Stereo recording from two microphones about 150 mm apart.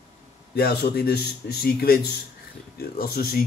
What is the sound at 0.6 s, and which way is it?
Speech, 90° left.